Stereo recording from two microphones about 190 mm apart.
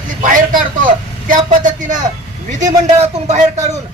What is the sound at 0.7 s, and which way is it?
A man's voice, 45° right (ahead or behind).